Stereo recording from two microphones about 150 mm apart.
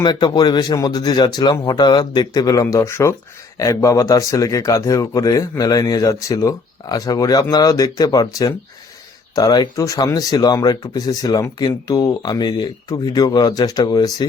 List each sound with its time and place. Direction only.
0.0 s speech: 30° left (ahead or behind)